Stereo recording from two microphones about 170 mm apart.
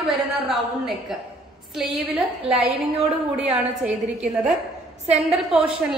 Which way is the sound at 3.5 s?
40° right (ahead or behind).